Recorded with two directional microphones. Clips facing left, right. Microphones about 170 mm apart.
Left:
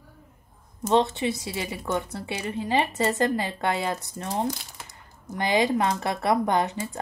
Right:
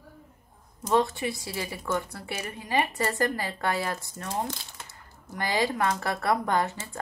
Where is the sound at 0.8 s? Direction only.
25° left (ahead or behind).